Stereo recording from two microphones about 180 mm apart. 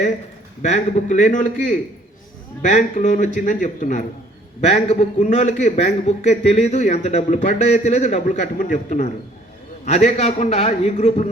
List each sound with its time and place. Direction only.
0.6 s a man's voice: 40° left (ahead or behind)